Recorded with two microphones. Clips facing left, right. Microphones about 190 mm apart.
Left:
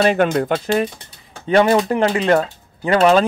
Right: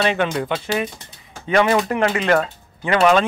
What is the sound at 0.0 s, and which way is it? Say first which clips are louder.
Speech: left 4 dB; 45° left (ahead or behind).